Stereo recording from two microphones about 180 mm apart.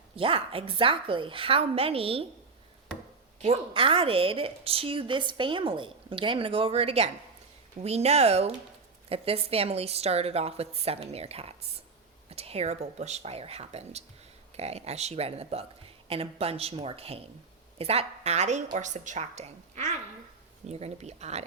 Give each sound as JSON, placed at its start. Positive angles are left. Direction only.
{"t": 0.2, "sound": "a woman's voice", "side_deg": -30}
{"t": 3.4, "sound": "a woman's voice", "side_deg": -30}